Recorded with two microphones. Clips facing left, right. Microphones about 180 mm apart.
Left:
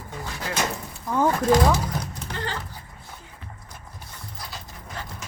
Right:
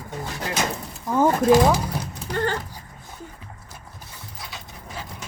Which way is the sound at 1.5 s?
10° right (ahead or behind).